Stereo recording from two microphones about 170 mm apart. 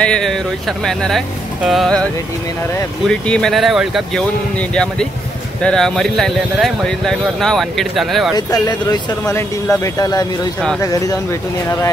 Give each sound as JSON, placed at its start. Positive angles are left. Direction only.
{"t": 0.0, "sound": "speech", "side_deg": 5}
{"t": 8.4, "sound": "speech", "side_deg": 25}